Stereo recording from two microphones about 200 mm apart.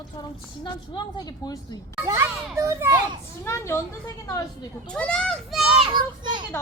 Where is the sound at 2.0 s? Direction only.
15° right (ahead or behind).